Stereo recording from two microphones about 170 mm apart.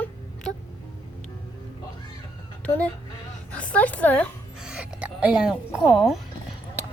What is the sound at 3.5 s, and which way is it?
Speech, 10° left (ahead or behind).